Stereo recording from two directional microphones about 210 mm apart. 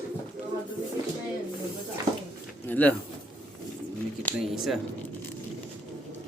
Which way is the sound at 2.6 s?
10° left (ahead or behind).